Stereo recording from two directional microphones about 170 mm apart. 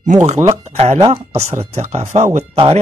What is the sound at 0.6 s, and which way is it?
Speech, 40° right (ahead or behind).